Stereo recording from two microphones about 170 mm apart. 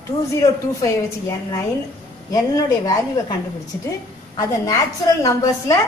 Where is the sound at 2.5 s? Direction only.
20° left (ahead or behind).